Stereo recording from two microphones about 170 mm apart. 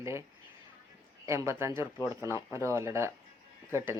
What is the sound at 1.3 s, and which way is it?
Speech, 15° right (ahead or behind).